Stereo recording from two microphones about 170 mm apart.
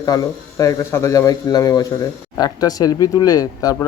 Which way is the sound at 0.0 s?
20° left (ahead or behind).